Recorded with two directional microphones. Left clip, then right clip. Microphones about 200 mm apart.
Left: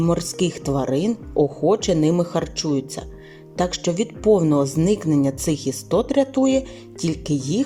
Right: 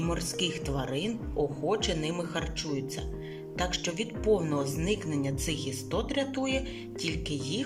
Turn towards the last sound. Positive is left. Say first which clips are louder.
# left 10 dB
turn(degrees=35)  # may be behind; listen again after turning